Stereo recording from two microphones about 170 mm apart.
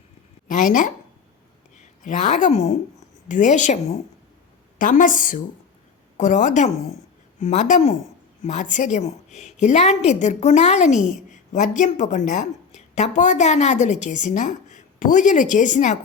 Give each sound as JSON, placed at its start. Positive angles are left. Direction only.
{"t": 0.4, "sound": "a woman's voice", "side_deg": 50}